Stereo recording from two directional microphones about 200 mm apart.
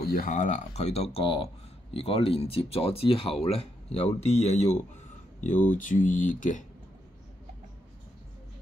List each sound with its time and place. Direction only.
0.0 s speech: 45° left (ahead or behind)